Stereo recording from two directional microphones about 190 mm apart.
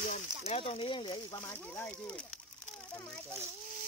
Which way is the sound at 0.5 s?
30° left (ahead or behind).